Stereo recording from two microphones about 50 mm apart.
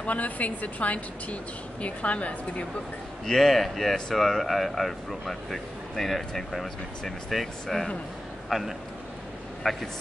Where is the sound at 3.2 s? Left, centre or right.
Centre.